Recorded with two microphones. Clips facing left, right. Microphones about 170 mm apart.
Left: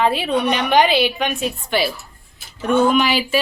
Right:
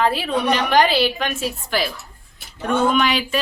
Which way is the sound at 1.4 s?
Centre (ahead or behind).